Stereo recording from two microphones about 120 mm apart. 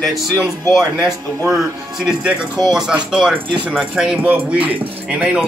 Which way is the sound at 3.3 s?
45° right (ahead or behind).